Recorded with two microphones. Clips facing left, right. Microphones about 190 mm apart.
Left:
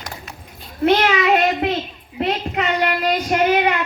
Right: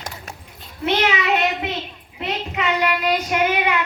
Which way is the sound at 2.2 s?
45° left (ahead or behind).